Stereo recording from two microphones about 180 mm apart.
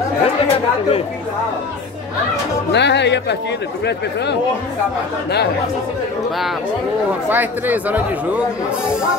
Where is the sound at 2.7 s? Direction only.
70° left (ahead or behind).